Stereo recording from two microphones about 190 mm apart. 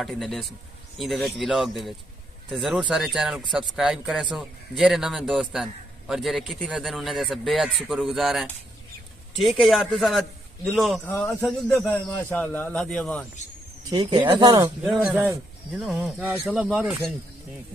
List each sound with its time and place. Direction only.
0.0 s speech: centre (ahead or behind)
13.8 s speech: 25° right (ahead or behind)
14.8 s speech: 10° right (ahead or behind)